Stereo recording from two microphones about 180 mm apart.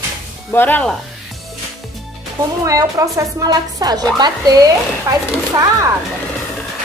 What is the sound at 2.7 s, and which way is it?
A woman's voice, 20° right (ahead or behind).